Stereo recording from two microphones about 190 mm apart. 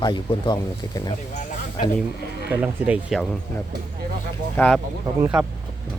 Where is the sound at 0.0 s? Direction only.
25° left (ahead or behind).